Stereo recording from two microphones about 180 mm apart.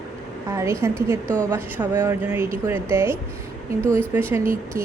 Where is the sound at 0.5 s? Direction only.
15° right (ahead or behind).